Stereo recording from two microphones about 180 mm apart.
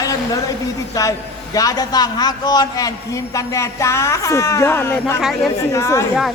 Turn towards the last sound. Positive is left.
turn(degrees=15)  # may be behind; listen again after turning